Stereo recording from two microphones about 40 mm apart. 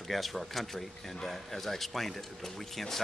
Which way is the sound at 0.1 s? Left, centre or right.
Centre.